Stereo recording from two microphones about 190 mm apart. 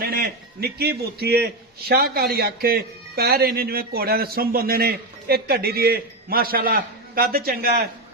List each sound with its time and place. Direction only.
0.0 s a man's voice: 50° right (ahead or behind)